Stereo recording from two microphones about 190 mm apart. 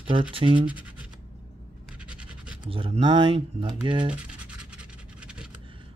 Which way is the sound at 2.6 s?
30° right (ahead or behind).